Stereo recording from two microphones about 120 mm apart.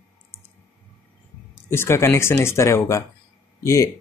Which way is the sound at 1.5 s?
20° left (ahead or behind).